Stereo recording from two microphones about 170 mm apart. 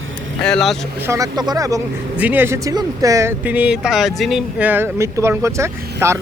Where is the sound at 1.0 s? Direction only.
20° right (ahead or behind).